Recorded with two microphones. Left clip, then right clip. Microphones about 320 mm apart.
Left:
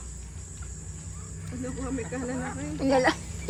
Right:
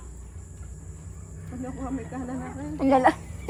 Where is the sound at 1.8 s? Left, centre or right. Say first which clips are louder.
Left 2 dB; centre.